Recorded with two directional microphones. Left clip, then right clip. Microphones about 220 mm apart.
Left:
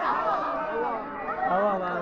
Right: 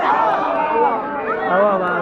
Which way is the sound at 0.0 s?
45° left (ahead or behind).